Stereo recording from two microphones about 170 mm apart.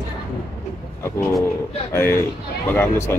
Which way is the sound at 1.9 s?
15° left (ahead or behind).